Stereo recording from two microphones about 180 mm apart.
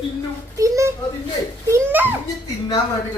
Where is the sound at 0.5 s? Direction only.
15° right (ahead or behind).